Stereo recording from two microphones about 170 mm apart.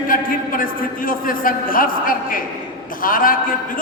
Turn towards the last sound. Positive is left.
turn(degrees=55)  # may be behind; listen again after turning